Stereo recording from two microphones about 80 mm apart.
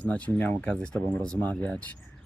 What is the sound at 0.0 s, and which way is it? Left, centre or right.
Speech, centre.